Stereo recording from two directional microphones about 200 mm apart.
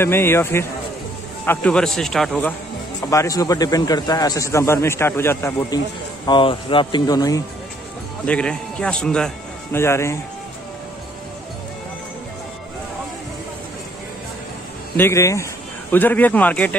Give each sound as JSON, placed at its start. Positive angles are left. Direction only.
{"t": 0.0, "sound": "a man's voice", "side_deg": 10}
{"t": 3.0, "sound": "a man's voice", "side_deg": 15}
{"t": 6.2, "sound": "speech", "side_deg": 25}
{"t": 8.3, "sound": "speech", "side_deg": 5}
{"t": 15.0, "sound": "a man's voice", "side_deg": 15}